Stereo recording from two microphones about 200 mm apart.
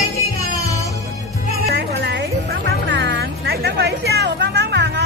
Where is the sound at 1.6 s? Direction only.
50° right (ahead or behind).